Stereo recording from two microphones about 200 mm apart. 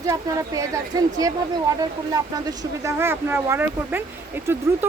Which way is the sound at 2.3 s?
15° right (ahead or behind).